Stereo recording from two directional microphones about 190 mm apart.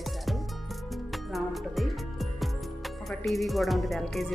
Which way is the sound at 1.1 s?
Centre (ahead or behind).